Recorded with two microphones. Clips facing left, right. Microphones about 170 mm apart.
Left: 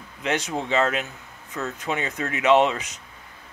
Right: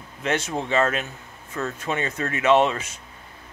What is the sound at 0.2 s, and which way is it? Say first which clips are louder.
Speech: right 1 dB; 15° left (ahead or behind).